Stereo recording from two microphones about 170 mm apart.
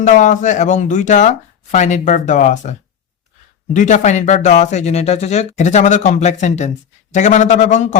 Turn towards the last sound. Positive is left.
turn(degrees=45)  # may be behind; listen again after turning